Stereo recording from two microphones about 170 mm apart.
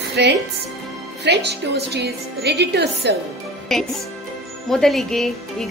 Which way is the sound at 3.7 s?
Centre (ahead or behind).